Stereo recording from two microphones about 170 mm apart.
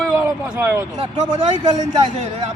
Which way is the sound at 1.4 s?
40° right (ahead or behind).